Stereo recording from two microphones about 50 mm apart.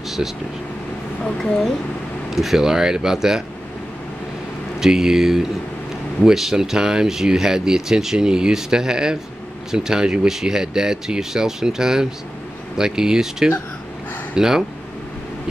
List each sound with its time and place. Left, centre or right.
1.2 s speech: centre
2.3 s speech: centre
4.7 s speech: centre